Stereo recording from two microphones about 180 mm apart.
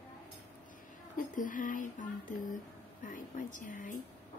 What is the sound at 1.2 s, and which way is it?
Speech, 50° left (ahead or behind).